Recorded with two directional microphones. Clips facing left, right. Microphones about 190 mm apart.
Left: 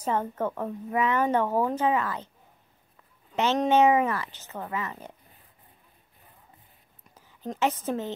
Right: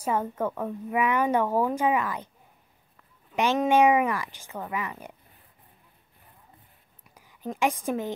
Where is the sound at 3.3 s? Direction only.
15° right (ahead or behind).